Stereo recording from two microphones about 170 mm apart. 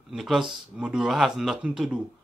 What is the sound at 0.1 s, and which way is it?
A man's voice, centre (ahead or behind).